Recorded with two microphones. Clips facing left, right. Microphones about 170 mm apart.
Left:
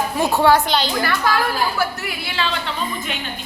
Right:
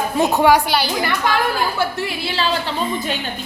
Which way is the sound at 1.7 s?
30° right (ahead or behind).